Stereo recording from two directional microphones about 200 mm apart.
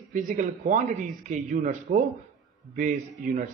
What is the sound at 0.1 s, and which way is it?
A man's voice, 40° right (ahead or behind).